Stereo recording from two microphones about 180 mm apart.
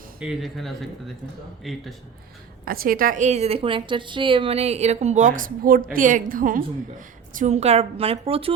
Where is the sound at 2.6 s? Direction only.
55° right (ahead or behind).